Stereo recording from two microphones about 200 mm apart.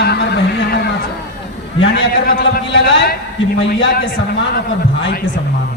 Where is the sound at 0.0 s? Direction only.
55° left (ahead or behind).